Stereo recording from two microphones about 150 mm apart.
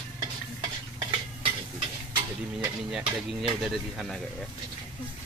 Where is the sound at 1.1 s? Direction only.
35° right (ahead or behind).